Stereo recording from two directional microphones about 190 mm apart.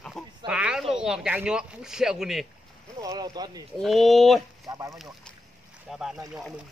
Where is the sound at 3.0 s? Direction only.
20° right (ahead or behind).